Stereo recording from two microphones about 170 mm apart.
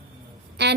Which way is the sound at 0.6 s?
80° right.